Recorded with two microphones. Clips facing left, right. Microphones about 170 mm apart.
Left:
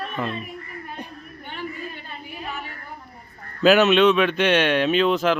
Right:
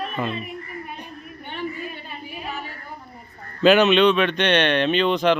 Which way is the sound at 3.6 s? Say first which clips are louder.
Even; centre (ahead or behind).